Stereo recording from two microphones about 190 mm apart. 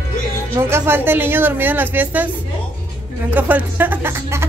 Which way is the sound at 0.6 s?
10° right (ahead or behind).